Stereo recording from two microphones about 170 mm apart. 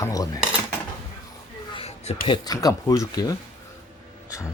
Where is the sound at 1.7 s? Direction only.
35° left (ahead or behind).